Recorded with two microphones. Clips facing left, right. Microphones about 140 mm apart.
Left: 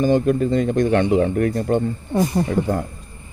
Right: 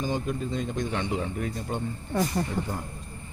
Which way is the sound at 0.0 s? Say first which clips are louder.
Left 12 dB; 65° left (ahead or behind).